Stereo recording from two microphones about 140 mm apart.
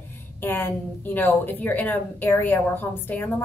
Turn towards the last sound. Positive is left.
turn(degrees=15)  # may be behind; listen again after turning